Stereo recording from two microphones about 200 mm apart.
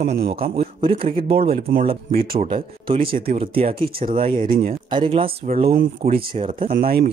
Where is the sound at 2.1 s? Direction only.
45° right (ahead or behind).